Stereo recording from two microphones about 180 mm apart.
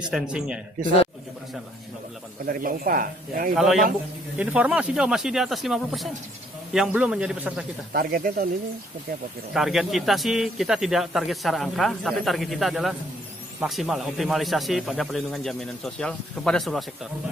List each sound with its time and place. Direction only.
0.1 s speech: 5° right (ahead or behind)
2.4 s speech: 55° right (ahead or behind)
3.5 s speech: centre (ahead or behind)
7.9 s speech: 55° right (ahead or behind)
9.5 s speech: centre (ahead or behind)